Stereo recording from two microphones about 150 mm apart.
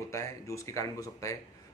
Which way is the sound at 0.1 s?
20° left (ahead or behind).